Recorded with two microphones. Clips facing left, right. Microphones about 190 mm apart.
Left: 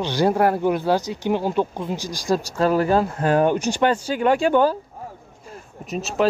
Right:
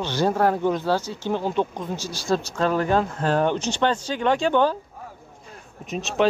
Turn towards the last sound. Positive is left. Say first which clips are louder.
# left 1 dB
turn(degrees=5)  # may be behind; listen again after turning